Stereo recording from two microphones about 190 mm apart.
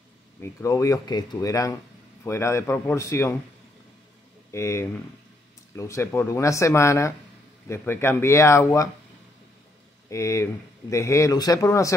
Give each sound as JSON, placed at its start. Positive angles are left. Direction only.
{"t": 0.4, "sound": "speech", "side_deg": 15}
{"t": 4.5, "sound": "speech", "side_deg": 15}
{"t": 10.0, "sound": "speech", "side_deg": 15}